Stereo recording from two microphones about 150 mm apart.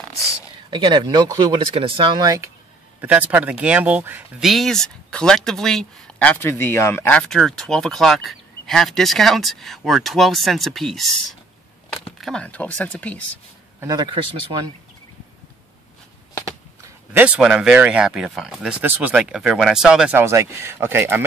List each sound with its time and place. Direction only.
0.7 s speech: 30° right (ahead or behind)
3.0 s speech: 10° right (ahead or behind)
4.4 s speech: centre (ahead or behind); by 7.2 s 20° left (ahead or behind)
7.2 s speech: 5° left (ahead or behind)
12.2 s speech: 5° left (ahead or behind)
13.7 s speech: 25° right (ahead or behind)
17.2 s speech: 10° right (ahead or behind)
20.2 s speech: 20° right (ahead or behind)